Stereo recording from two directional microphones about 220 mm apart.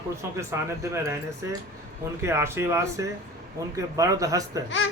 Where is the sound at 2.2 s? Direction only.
10° right (ahead or behind).